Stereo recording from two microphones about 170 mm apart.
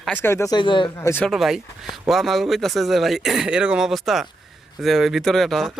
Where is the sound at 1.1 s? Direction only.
10° left (ahead or behind).